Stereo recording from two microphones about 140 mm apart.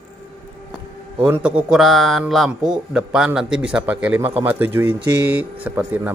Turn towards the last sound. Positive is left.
turn(degrees=-10)  # may be behind; listen again after turning